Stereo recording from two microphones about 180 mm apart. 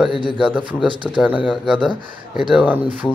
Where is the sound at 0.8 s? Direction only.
25° right (ahead or behind).